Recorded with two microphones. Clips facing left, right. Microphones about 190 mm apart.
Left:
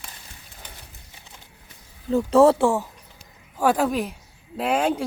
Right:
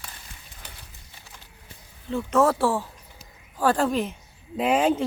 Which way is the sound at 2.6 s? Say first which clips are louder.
Left 3 dB; 15° left (ahead or behind).